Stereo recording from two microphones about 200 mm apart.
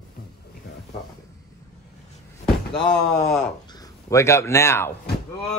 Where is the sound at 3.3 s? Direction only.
15° left (ahead or behind).